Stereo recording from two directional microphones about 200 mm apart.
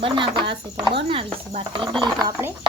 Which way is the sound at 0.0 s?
25° right (ahead or behind).